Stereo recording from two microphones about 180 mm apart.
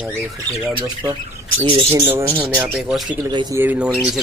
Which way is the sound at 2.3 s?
10° right (ahead or behind).